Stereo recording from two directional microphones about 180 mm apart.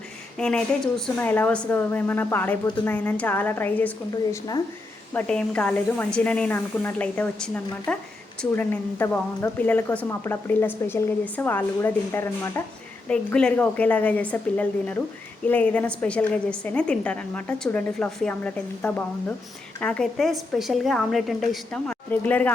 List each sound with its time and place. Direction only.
0.3 s a woman's voice: 5° left (ahead or behind)